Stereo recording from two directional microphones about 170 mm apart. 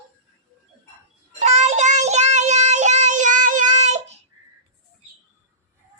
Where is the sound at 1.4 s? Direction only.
40° right (ahead or behind).